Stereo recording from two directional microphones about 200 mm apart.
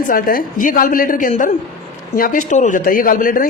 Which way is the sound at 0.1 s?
45° left (ahead or behind).